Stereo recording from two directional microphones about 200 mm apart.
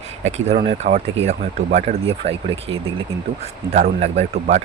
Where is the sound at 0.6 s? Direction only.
30° right (ahead or behind).